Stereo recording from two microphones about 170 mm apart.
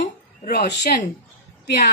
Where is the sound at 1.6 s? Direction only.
75° left (ahead or behind).